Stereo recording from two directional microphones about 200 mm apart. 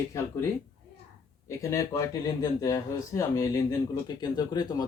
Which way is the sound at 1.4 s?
15° left (ahead or behind).